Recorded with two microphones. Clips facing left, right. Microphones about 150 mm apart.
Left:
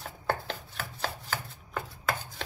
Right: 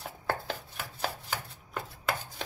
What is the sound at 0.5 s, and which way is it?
Chopping, 10° right (ahead or behind).